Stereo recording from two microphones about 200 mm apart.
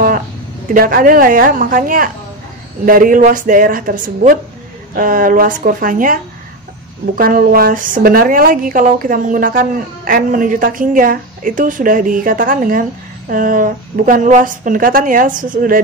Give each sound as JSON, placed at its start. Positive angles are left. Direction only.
{"t": 0.7, "sound": "speech", "side_deg": -45}
{"t": 7.2, "sound": "speech", "side_deg": -45}